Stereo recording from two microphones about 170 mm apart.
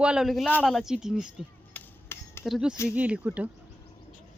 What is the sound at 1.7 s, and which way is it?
Hammer, 15° left (ahead or behind).